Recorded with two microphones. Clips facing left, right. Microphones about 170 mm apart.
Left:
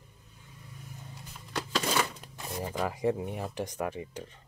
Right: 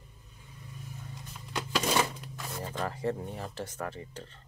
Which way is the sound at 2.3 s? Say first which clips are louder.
Left 6 dB; 15° left (ahead or behind).